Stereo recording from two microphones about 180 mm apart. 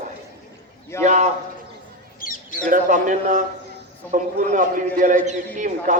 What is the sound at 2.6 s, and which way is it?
A man's voice, 45° right (ahead or behind).